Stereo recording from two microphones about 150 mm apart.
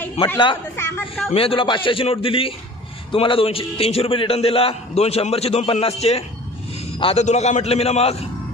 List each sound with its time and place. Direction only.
0.2 s a man's voice: 45° left (ahead or behind)
0.7 s a woman's voice: 15° left (ahead or behind)
1.3 s a man's voice: 35° left (ahead or behind)